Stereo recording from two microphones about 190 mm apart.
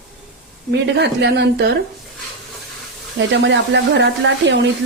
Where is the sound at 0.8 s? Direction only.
65° right (ahead or behind).